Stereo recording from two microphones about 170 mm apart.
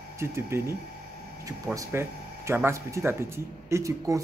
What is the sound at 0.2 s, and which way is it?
Speech, 15° right (ahead or behind).